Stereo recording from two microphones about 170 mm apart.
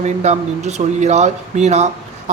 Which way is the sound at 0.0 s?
40° right (ahead or behind).